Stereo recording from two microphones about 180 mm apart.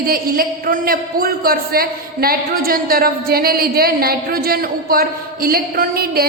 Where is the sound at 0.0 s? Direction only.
55° right (ahead or behind).